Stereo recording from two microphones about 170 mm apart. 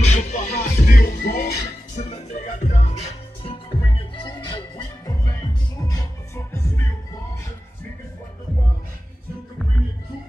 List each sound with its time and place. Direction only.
0.0 s music: 45° left (ahead or behind)
0.8 s music: 60° left (ahead or behind)
2.0 s music: 40° left (ahead or behind); by 6.9 s 15° left (ahead or behind)